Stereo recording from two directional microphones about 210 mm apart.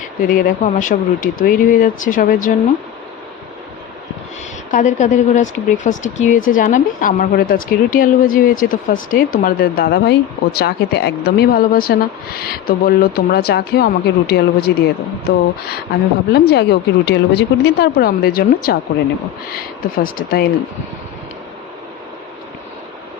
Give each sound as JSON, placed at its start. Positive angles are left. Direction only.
{"t": 0.0, "sound": "speech", "side_deg": 40}
{"t": 4.7, "sound": "a woman's voice", "side_deg": 35}
{"t": 16.3, "sound": "a woman's voice", "side_deg": 50}